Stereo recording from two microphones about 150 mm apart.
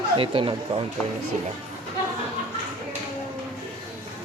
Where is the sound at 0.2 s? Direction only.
35° right (ahead or behind).